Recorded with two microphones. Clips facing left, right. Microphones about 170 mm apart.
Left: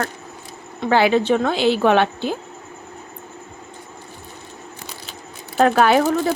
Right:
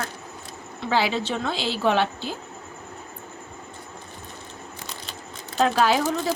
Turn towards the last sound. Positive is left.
turn(degrees=60)  # may be behind; listen again after turning